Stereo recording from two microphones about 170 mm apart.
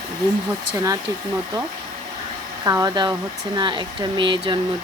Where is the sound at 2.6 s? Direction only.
20° right (ahead or behind).